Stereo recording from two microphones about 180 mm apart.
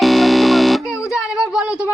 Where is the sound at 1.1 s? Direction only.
5° right (ahead or behind).